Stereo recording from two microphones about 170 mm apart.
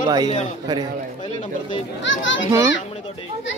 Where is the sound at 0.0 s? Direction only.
20° right (ahead or behind).